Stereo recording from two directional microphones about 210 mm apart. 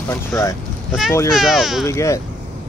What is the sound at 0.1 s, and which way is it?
Speech, 15° left (ahead or behind).